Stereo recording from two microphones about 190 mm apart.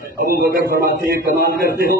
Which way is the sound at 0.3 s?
50° right (ahead or behind).